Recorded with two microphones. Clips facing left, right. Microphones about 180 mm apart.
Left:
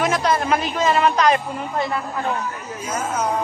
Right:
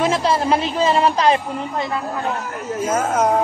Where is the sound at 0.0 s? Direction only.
25° right (ahead or behind).